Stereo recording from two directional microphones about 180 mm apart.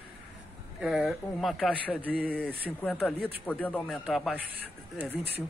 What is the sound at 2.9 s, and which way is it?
Speech, 5° left (ahead or behind).